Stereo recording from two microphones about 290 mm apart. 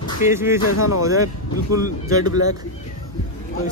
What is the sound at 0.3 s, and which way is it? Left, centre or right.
Speech, centre.